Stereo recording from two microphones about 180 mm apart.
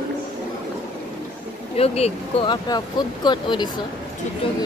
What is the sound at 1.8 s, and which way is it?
Speech, 35° left (ahead or behind).